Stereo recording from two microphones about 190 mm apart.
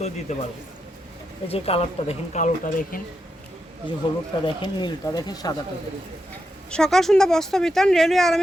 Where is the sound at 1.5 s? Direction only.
30° left (ahead or behind).